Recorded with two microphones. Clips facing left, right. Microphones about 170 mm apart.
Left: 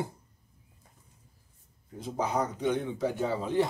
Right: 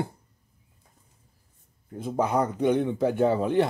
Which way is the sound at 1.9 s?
55° right (ahead or behind).